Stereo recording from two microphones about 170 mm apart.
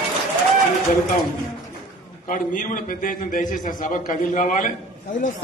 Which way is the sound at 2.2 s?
50° left (ahead or behind).